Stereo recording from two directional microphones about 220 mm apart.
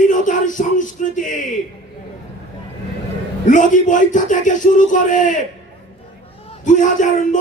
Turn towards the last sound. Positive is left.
turn(degrees=35)  # may be behind; listen again after turning